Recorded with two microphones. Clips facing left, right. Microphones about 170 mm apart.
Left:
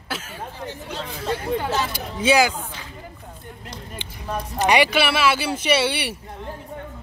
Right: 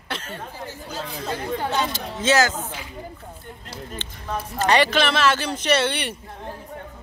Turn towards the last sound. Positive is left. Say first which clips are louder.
# left 1 dB
turn(degrees=10)  # may be behind; listen again after turning